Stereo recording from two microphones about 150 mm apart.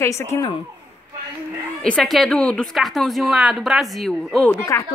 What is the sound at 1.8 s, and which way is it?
A woman's voice, 5° left (ahead or behind).